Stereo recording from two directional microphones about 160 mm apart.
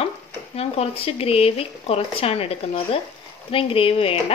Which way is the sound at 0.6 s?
35° left (ahead or behind).